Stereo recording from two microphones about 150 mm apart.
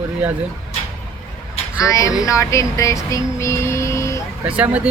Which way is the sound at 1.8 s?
20° left (ahead or behind).